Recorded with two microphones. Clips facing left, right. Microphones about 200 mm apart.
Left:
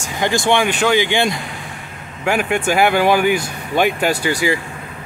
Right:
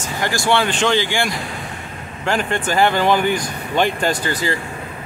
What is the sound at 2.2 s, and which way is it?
Speech, 10° left (ahead or behind).